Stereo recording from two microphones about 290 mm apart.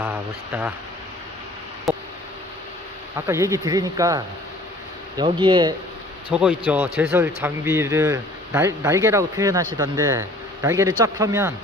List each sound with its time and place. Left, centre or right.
0.0 s speech: centre
1.9 s a sound: centre
3.2 s speech: centre
6.3 s speech: centre